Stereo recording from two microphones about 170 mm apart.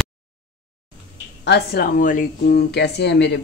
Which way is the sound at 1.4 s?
75° left (ahead or behind).